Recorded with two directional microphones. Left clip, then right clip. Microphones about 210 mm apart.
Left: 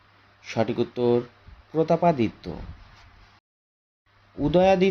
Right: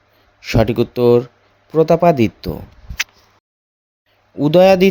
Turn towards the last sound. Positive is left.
turn(degrees=-45)  # may be behind; listen again after turning